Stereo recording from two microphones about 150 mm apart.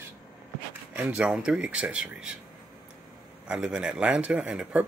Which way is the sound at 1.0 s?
10° right (ahead or behind).